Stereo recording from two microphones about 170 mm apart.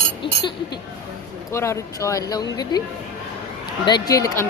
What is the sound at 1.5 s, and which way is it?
Speech, 15° left (ahead or behind).